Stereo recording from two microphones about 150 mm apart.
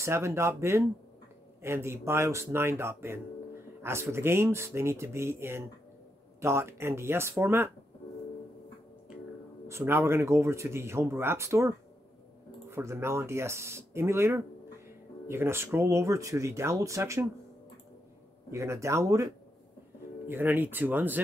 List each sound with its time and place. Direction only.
0.0 s speech: 20° right (ahead or behind)
9.7 s speech: 15° right (ahead or behind)
18.5 s speech: 20° right (ahead or behind)